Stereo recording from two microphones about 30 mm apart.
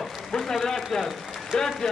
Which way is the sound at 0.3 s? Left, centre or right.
Centre.